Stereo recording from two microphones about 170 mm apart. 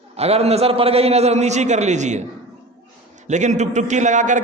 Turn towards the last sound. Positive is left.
turn(degrees=-45)  # may be behind; listen again after turning